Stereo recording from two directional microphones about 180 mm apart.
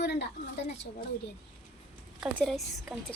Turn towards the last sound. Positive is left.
turn(degrees=0)  # may be behind; listen again after turning